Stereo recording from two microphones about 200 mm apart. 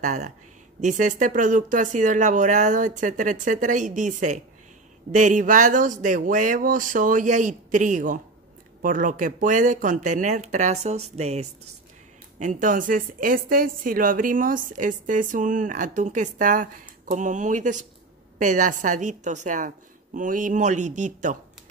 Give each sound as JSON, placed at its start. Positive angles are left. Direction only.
{"t": 0.0, "sound": "a woman's voice", "side_deg": -35}